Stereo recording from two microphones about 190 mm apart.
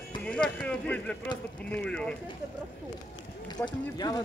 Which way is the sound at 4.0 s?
20° left (ahead or behind).